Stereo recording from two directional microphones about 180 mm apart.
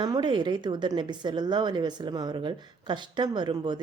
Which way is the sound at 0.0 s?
25° right (ahead or behind).